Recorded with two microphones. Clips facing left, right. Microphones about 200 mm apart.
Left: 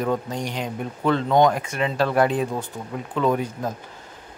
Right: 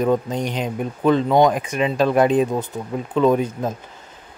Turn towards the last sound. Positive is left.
turn(degrees=-20)  # may be behind; listen again after turning